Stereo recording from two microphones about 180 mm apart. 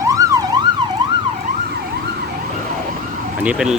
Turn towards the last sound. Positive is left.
turn(degrees=-5)  # may be behind; listen again after turning